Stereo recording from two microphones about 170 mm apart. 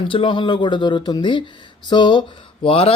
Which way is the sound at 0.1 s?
30° left (ahead or behind).